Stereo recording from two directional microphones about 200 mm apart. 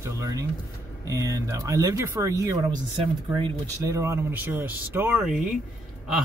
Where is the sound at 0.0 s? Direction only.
15° right (ahead or behind).